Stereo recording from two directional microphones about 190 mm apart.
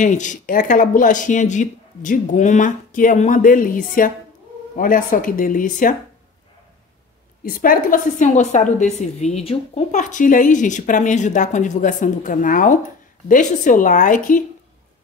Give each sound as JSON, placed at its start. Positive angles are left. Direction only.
{"t": 0.0, "sound": "speech", "side_deg": 40}
{"t": 7.4, "sound": "a woman's voice", "side_deg": 50}